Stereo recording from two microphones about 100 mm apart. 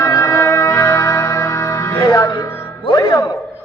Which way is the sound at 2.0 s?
35° left (ahead or behind).